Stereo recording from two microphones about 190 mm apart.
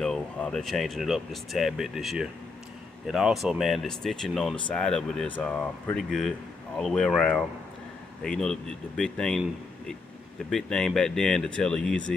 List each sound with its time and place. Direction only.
0.0 s speech: 5° left (ahead or behind)